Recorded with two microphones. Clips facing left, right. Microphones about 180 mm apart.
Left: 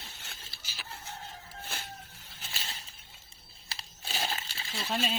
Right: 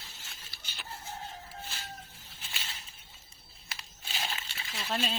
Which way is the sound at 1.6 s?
60° left (ahead or behind).